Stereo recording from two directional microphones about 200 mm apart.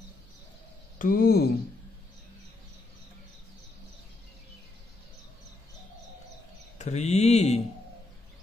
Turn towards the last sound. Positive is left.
turn(degrees=35)  # may be behind; listen again after turning